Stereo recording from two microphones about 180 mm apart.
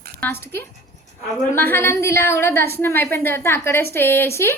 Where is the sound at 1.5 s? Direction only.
10° left (ahead or behind).